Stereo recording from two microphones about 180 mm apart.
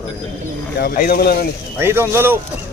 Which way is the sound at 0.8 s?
55° left (ahead or behind).